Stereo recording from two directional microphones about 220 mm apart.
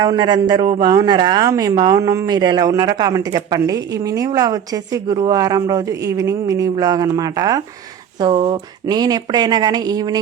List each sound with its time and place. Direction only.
0.0 s speech: 20° right (ahead or behind)